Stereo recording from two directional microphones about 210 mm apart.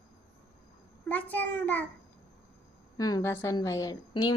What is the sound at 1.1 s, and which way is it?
Speech, 10° left (ahead or behind).